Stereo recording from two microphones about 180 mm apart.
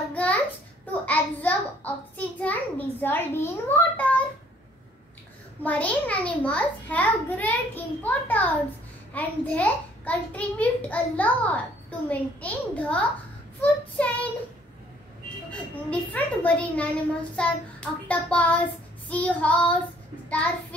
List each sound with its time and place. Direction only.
0.1 s a sound: 10° left (ahead or behind)
5.6 s a child's voice: 10° left (ahead or behind)
15.7 s a child's voice: 10° left (ahead or behind)